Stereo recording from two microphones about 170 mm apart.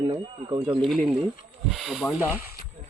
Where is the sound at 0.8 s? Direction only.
5° left (ahead or behind).